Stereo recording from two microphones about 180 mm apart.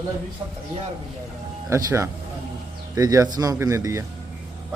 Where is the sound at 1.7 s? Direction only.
15° right (ahead or behind).